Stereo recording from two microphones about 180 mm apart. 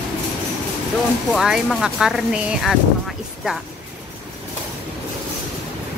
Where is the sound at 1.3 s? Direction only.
Centre (ahead or behind).